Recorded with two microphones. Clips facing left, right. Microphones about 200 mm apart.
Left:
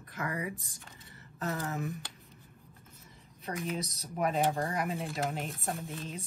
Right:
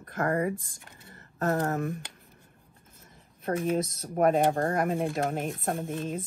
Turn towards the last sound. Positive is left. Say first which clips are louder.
# right 7 dB
turn(degrees=-50)  # may be behind; listen again after turning